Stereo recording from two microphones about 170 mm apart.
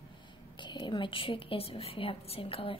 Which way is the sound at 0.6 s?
30° left (ahead or behind).